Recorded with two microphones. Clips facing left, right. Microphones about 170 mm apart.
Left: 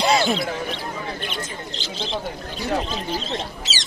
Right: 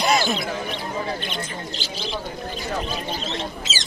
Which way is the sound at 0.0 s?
30° left (ahead or behind).